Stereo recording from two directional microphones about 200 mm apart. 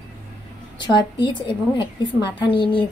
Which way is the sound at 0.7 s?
25° left (ahead or behind).